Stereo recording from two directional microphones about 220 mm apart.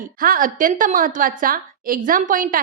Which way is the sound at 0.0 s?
40° right (ahead or behind).